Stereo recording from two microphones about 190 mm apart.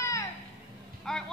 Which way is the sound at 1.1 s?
5° left (ahead or behind).